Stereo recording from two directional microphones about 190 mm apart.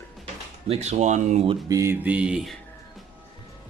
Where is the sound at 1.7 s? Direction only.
15° right (ahead or behind).